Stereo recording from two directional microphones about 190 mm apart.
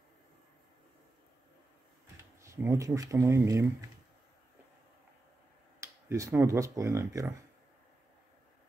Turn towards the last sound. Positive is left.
turn(degrees=-15)  # may be behind; listen again after turning